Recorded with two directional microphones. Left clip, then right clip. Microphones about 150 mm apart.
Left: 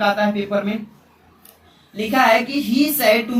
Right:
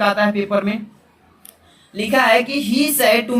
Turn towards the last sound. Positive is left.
turn(degrees=-45)  # may be behind; listen again after turning